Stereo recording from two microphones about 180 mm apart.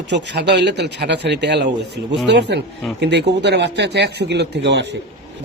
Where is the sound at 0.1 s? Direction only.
75° right (ahead or behind).